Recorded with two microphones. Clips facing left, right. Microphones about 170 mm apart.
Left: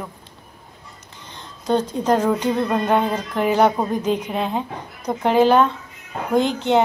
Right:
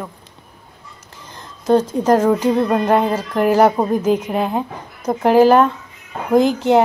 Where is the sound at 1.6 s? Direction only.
5° right (ahead or behind).